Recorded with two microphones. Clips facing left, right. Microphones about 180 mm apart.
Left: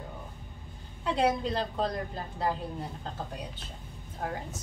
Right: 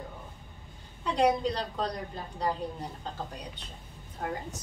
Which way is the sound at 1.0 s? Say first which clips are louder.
Right 2 dB; 5° left (ahead or behind).